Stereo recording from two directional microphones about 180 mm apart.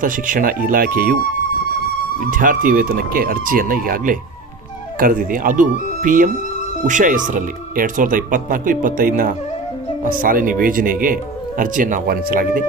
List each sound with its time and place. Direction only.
0.0 s speech: 50° right (ahead or behind)
2.2 s speech: 50° right (ahead or behind)